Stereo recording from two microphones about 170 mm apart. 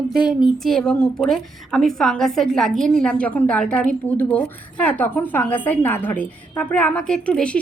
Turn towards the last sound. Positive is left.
turn(degrees=5)  # may be behind; listen again after turning